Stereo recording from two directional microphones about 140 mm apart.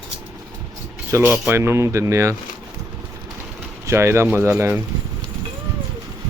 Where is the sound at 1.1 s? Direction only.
15° right (ahead or behind).